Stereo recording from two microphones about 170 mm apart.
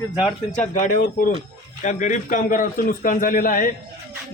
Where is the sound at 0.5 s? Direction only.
45° left (ahead or behind).